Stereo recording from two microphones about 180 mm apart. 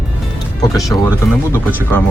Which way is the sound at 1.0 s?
15° left (ahead or behind).